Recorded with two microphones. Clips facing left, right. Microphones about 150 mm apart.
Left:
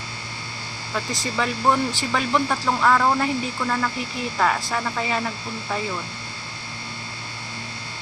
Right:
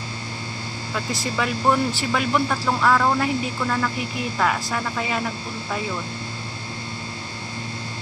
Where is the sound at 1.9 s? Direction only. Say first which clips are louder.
Right 1 dB; 5° right (ahead or behind).